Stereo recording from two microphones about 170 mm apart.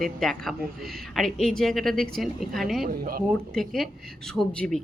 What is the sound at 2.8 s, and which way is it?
Speech, 60° right (ahead or behind).